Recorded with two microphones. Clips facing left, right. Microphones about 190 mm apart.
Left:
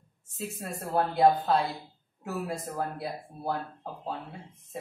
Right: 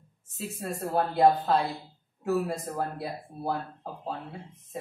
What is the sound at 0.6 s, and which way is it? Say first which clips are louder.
Speech: right 1 dB; centre (ahead or behind).